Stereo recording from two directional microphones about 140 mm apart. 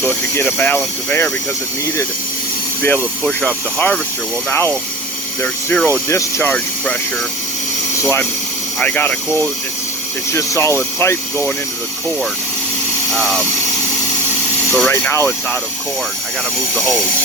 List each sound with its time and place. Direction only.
0.0 s speech: 10° left (ahead or behind)
3.2 s speech: 10° left (ahead or behind)
6.1 s speech: 20° left (ahead or behind)
8.8 s speech: 10° left (ahead or behind)
13.1 s speech: centre (ahead or behind)
14.7 s speech: 15° left (ahead or behind)
16.7 s speech: 5° left (ahead or behind)